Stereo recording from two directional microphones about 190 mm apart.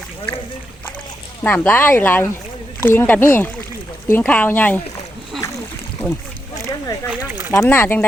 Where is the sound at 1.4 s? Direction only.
10° left (ahead or behind).